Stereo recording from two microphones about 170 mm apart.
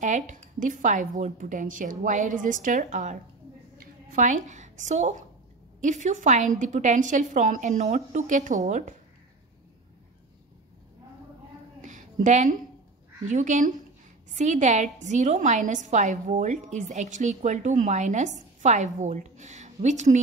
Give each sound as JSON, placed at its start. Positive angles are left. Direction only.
{"t": 0.0, "sound": "a woman's voice", "side_deg": -45}
{"t": 11.8, "sound": "a sound", "side_deg": -45}
{"t": 13.2, "sound": "a woman's voice", "side_deg": -45}